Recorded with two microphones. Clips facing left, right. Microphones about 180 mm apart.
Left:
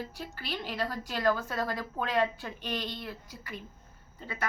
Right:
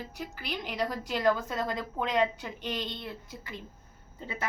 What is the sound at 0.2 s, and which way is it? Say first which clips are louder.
A woman's voice: right 1 dB; 15° right (ahead or behind).